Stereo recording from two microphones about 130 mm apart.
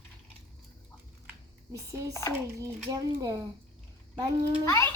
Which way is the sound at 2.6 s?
25° right (ahead or behind).